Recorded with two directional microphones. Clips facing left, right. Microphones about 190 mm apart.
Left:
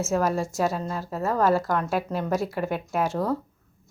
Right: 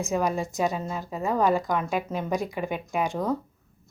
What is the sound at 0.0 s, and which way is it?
A woman's voice, centre (ahead or behind).